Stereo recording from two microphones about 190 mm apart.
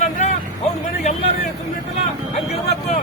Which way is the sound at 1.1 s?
35° left (ahead or behind).